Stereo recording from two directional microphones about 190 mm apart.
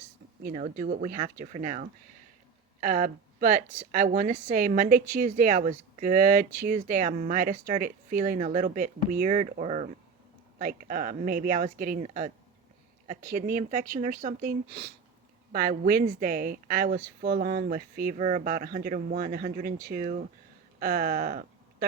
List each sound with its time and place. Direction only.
0.4 s a woman's voice: 45° right (ahead or behind)